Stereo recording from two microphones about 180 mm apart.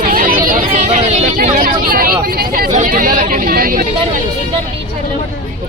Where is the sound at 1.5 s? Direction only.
55° right (ahead or behind).